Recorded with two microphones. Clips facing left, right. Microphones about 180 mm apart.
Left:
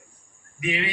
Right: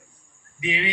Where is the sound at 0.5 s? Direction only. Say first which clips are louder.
Left 1 dB; 20° right (ahead or behind).